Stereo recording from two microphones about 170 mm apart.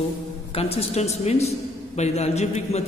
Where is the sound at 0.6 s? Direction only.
35° left (ahead or behind).